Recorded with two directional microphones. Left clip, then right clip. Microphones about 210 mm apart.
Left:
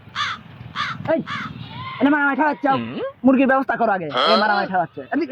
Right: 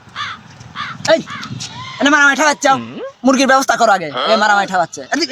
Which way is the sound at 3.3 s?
30° right (ahead or behind).